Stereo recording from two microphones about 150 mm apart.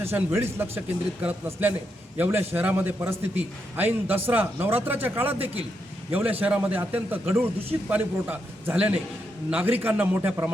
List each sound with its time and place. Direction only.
0.0 s a man's voice: 15° right (ahead or behind)